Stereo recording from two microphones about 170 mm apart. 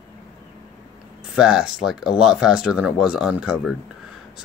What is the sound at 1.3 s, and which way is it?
Speech, 5° right (ahead or behind).